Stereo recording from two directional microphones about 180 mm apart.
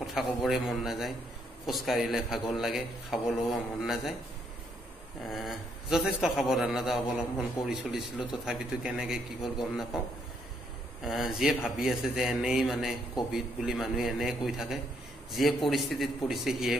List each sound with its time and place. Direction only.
0.0 s a man's voice: centre (ahead or behind)
5.2 s a man's voice: centre (ahead or behind)
11.1 s a man's voice: centre (ahead or behind)